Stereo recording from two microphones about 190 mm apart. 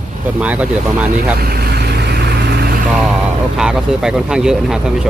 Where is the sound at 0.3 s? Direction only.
5° right (ahead or behind).